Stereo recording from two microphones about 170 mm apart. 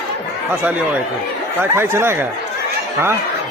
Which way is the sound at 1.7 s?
15° right (ahead or behind).